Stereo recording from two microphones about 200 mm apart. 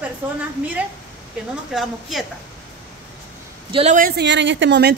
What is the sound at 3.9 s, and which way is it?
Speech, 50° right (ahead or behind).